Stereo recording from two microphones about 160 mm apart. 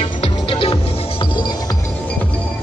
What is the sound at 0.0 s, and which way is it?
Music, 30° left (ahead or behind).